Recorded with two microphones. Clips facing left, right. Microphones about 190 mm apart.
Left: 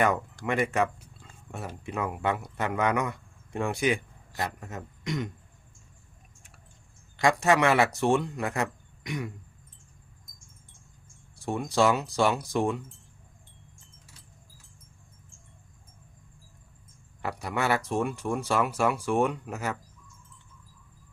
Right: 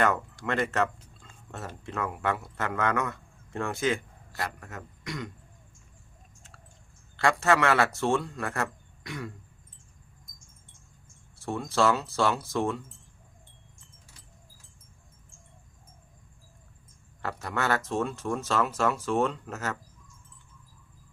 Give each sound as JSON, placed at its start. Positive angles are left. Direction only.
{"t": 0.4, "sound": "speech", "side_deg": 15}
{"t": 7.2, "sound": "speech", "side_deg": 15}
{"t": 11.3, "sound": "speech", "side_deg": 15}
{"t": 17.2, "sound": "speech", "side_deg": 15}